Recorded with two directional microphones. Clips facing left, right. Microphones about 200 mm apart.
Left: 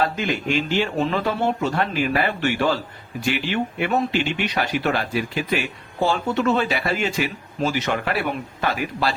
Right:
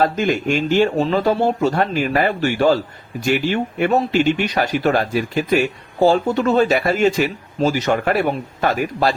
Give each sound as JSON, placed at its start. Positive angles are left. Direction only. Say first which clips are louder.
{"t": 0.0, "sound": "speech", "louder": "right 5 dB", "side_deg": -45}